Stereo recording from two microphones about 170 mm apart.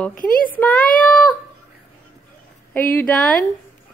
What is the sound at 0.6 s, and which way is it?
Child singing, 10° left (ahead or behind).